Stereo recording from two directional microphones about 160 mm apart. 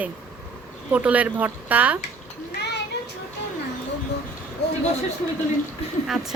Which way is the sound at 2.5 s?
90° left.